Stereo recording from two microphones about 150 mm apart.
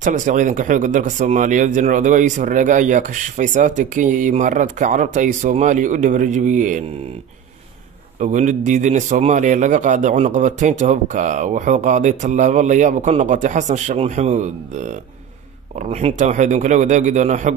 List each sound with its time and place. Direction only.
0.0 s speech: 55° right (ahead or behind)
8.2 s a man's voice: 55° right (ahead or behind)